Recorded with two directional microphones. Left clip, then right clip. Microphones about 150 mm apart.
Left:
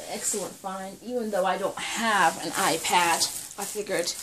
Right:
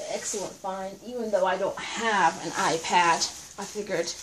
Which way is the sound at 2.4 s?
20° left (ahead or behind).